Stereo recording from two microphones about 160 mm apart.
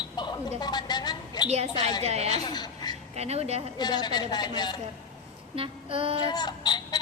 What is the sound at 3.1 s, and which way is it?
Speech, 40° right (ahead or behind).